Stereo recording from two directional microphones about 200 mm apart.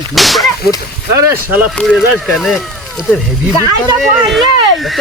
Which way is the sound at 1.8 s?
Centre (ahead or behind).